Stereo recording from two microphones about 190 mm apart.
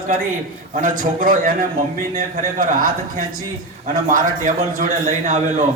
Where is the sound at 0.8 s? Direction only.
45° right (ahead or behind).